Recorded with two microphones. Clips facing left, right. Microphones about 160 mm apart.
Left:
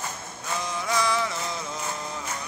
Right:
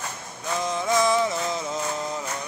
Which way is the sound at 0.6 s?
20° right (ahead or behind).